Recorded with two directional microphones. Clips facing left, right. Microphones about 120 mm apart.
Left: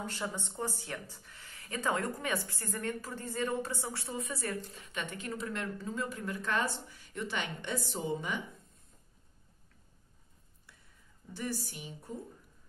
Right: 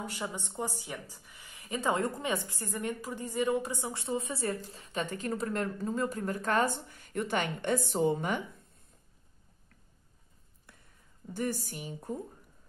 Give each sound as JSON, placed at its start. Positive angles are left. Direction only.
{"t": 0.0, "sound": "speech", "side_deg": -15}
{"t": 10.7, "sound": "a sound", "side_deg": -50}
{"t": 11.3, "sound": "a woman's voice", "side_deg": -50}